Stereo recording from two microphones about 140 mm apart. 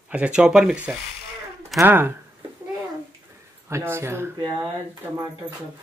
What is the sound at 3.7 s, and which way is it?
Speech, 20° right (ahead or behind).